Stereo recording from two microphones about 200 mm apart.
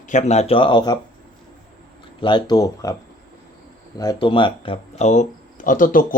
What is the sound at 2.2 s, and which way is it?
Speech, 20° left (ahead or behind).